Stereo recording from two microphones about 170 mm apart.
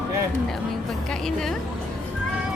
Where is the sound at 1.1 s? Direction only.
5° left (ahead or behind).